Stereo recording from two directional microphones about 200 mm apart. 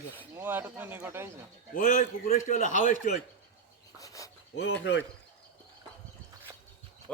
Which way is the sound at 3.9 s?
15° left (ahead or behind).